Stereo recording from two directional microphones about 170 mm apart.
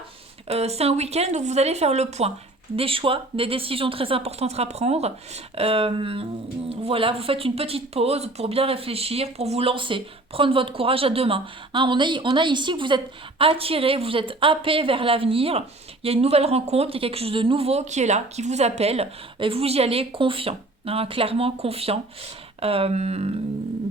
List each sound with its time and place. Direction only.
0.4 s speech: 35° right (ahead or behind)